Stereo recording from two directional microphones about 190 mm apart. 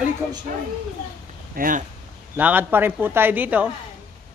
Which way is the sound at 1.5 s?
45° right (ahead or behind).